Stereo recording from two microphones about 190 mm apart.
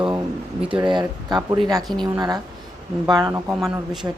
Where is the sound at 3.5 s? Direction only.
Centre (ahead or behind).